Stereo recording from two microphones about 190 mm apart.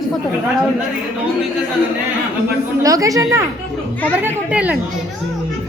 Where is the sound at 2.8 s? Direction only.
20° right (ahead or behind).